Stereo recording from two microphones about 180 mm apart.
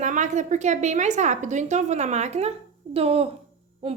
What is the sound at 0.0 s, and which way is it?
A woman's voice, 45° right (ahead or behind).